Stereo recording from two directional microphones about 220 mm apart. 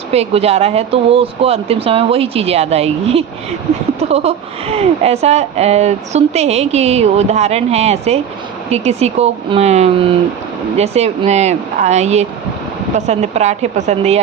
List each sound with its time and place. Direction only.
0.1 s speech: 30° right (ahead or behind)